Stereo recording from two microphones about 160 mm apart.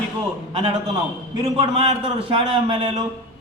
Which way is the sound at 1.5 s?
35° right (ahead or behind).